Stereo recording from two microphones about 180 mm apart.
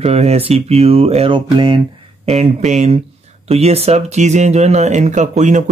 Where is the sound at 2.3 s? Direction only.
35° right (ahead or behind).